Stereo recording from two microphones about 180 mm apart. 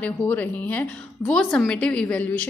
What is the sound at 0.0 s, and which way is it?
A woman's voice, 10° left (ahead or behind).